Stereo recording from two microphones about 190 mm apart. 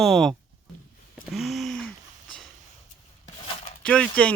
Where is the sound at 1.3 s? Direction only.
Centre (ahead or behind).